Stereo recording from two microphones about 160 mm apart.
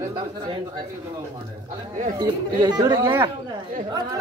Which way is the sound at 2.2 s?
25° right (ahead or behind).